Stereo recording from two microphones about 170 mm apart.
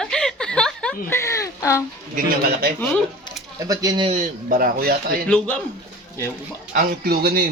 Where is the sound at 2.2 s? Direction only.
60° right (ahead or behind).